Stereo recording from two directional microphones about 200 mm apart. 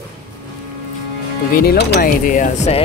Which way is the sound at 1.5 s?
50° left (ahead or behind).